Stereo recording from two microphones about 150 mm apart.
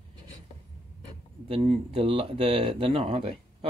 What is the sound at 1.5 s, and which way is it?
Speech, 40° right (ahead or behind).